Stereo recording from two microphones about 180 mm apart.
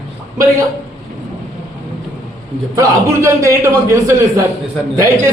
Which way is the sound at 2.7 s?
15° right (ahead or behind).